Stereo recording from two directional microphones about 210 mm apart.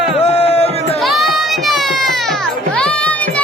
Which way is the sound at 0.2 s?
30° left (ahead or behind).